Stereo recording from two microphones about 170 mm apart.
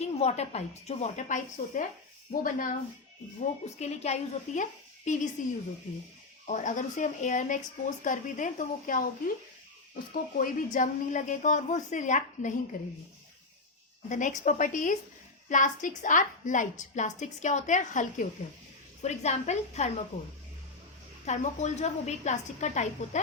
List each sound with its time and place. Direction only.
0.0 s a woman's voice: 40° left (ahead or behind); by 2.7 s 55° left (ahead or behind)
3.8 s a woman's voice: 40° left (ahead or behind)
6.5 s speech: 50° left (ahead or behind)
14.1 s a woman's voice: 45° left (ahead or behind)